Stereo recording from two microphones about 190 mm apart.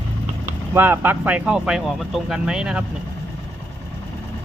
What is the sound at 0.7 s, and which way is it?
Speech, 10° right (ahead or behind).